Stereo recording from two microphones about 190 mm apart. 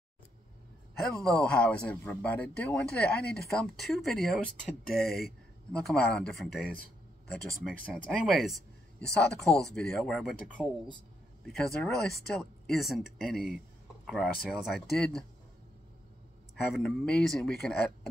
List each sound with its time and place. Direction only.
1.1 s speech: 5° left (ahead or behind)
4.8 s speech: 55° left (ahead or behind)
5.7 s speech: 5° left (ahead or behind)
16.5 s speech: centre (ahead or behind)